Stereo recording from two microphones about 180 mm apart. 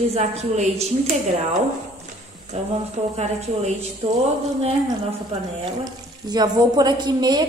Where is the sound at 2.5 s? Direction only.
40° right (ahead or behind).